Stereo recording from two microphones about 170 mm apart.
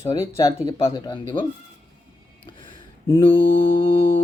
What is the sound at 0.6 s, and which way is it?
Speech, 25° left (ahead or behind).